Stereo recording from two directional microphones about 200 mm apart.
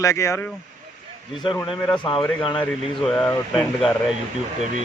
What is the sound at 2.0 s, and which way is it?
Speech, 25° left (ahead or behind).